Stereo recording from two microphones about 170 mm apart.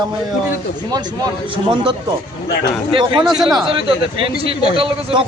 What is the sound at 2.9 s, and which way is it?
A man's voice, 30° right (ahead or behind).